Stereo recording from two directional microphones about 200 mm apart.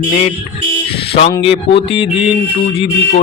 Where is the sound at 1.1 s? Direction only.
30° left (ahead or behind).